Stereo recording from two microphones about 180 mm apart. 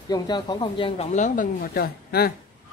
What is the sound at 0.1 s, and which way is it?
Speech, 25° left (ahead or behind).